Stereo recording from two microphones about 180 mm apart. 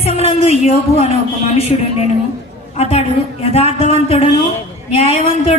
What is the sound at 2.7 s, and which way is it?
Speech, 35° left (ahead or behind).